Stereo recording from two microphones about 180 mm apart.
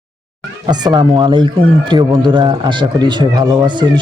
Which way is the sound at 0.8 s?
25° right (ahead or behind).